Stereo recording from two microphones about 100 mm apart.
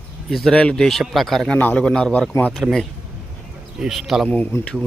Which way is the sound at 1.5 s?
15° left (ahead or behind).